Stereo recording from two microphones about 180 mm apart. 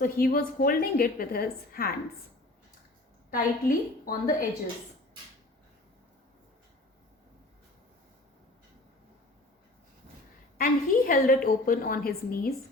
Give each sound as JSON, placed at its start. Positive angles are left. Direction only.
{"t": 0.0, "sound": "a woman's voice", "side_deg": 55}
{"t": 3.3, "sound": "a woman's voice", "side_deg": 50}
{"t": 10.6, "sound": "a woman's voice", "side_deg": 50}